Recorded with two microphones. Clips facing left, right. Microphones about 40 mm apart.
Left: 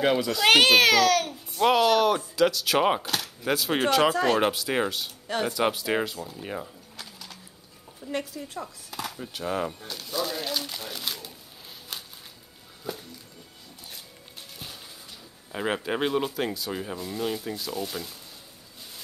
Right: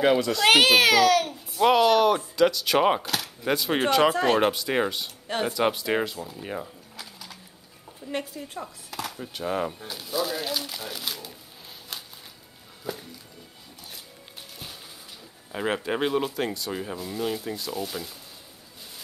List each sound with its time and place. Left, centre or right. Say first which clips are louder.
0.0 s a child's voice: right 2 dB; centre
4.1 s a woman's voice: right 1 dB; right
4.4 s a child's voice: right 1 dB; centre
6.2 s mechanisms: right 1 dB; centre
8.1 s a woman's voice: even; right
8.4 s a child's voice: even; centre
12.9 s music: right 1 dB; centre
15.5 s a child's voice: right 1 dB; centre